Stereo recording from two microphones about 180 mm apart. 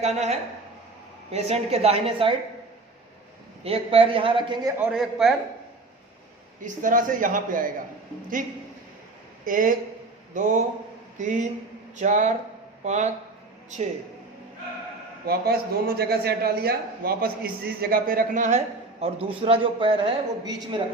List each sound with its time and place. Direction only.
0.0 s a woman's voice: 35° right (ahead or behind)
3.6 s a man's voice: 30° right (ahead or behind)
4.8 s a woman's voice: 5° right (ahead or behind)
6.7 s a man's voice: 45° right (ahead or behind)
9.5 s a man's voice: 45° right (ahead or behind)
15.3 s a man's voice: 60° right (ahead or behind); by 20.8 s 25° right (ahead or behind)